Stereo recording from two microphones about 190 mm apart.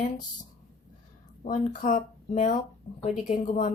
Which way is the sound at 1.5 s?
40° left (ahead or behind).